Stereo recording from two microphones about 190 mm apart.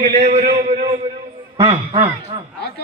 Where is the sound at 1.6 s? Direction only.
30° right (ahead or behind).